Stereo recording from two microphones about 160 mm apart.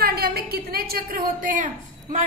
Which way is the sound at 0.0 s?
70° right (ahead or behind).